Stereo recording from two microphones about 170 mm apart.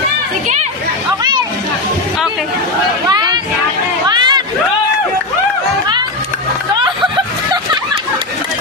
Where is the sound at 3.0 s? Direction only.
25° right (ahead or behind).